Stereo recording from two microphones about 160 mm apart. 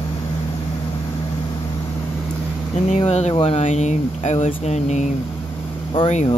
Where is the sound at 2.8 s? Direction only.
40° left (ahead or behind).